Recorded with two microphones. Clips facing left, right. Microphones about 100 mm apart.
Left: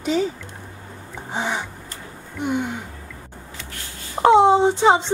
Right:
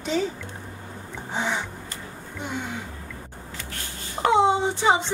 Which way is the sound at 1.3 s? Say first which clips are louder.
Left 2 dB; 10° left (ahead or behind).